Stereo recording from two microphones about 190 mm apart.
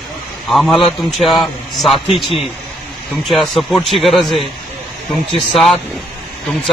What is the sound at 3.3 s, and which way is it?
Speech, centre (ahead or behind).